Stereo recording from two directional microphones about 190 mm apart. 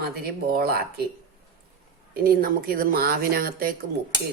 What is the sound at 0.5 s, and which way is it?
Speech, 55° right (ahead or behind).